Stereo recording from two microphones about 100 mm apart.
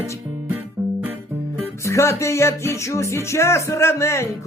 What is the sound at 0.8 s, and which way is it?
Music, 35° right (ahead or behind).